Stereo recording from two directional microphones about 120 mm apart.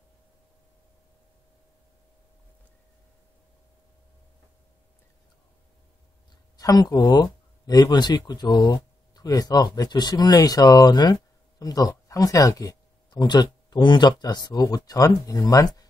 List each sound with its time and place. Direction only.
6.5 s speech: 30° left (ahead or behind)